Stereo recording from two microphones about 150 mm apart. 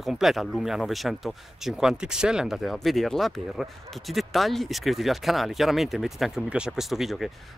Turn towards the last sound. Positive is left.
turn(degrees=0)  # may be behind; listen again after turning